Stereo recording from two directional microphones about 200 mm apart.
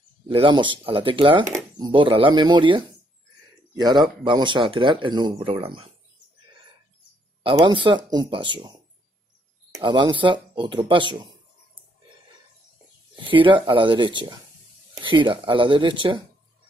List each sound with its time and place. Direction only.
0.3 s speech: 25° right (ahead or behind)
7.5 s speech: 25° right (ahead or behind)
9.8 s speech: 25° right (ahead or behind)
13.1 s speech: 25° right (ahead or behind)